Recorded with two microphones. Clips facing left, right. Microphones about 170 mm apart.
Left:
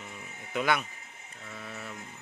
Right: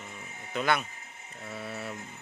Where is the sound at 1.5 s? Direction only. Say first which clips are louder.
Right 4 dB; 30° right (ahead or behind).